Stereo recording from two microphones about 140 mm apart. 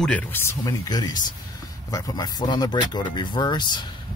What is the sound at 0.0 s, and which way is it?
Speech, 10° left (ahead or behind).